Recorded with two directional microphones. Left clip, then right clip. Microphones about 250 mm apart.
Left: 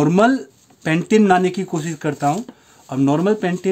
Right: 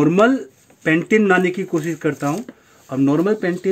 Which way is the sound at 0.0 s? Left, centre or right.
Left.